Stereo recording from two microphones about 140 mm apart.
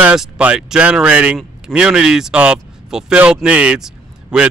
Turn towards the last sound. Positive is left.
turn(degrees=-5)  # may be behind; listen again after turning